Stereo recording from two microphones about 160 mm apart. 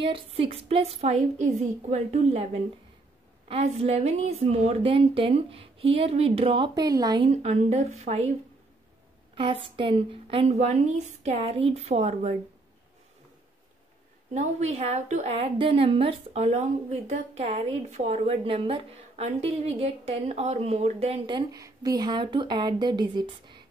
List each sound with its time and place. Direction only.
0.0 s a woman's voice: 35° right (ahead or behind)
3.4 s a woman's voice: 40° right (ahead or behind)
7.2 s a woman's voice: 45° right (ahead or behind)
9.3 s a woman's voice: 35° right (ahead or behind)
14.3 s a woman's voice: 45° right (ahead or behind)
21.4 s a woman's voice: 20° right (ahead or behind)